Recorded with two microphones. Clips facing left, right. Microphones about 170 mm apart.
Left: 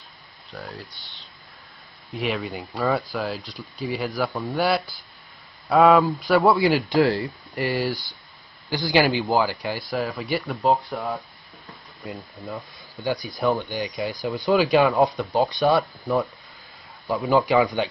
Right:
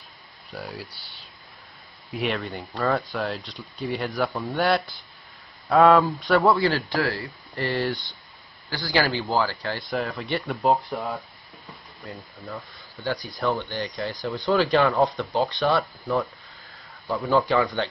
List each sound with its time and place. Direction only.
0.5 s speech: 5° right (ahead or behind)
6.6 s speech: 15° left (ahead or behind)
12.1 s speech: 15° left (ahead or behind)
17.1 s speech: 15° left (ahead or behind)